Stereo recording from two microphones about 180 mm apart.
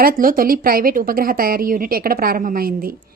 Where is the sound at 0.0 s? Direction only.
50° right (ahead or behind).